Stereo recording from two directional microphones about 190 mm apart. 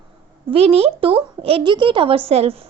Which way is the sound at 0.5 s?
30° right (ahead or behind).